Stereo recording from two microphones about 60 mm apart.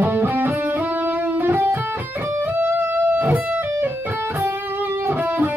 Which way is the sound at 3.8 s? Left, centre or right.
Right.